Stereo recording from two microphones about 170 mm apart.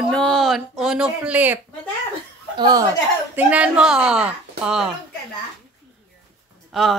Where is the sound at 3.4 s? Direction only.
10° right (ahead or behind).